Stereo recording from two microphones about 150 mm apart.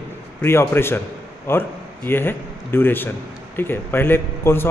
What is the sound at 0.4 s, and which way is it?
A man's voice, 15° left (ahead or behind).